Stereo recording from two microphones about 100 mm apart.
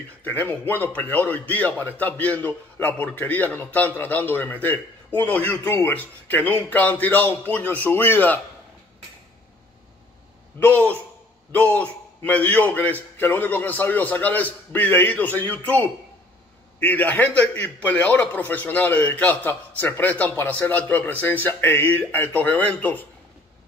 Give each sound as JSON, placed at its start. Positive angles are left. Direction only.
{"t": 0.2, "sound": "a man's voice", "side_deg": 20}
{"t": 10.6, "sound": "a man's voice", "side_deg": 15}